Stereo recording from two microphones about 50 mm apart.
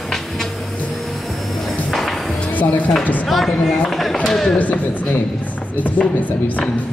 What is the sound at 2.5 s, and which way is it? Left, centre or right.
Speech, left.